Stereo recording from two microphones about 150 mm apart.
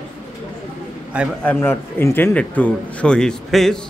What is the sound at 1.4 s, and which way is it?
A man's voice, 10° left (ahead or behind).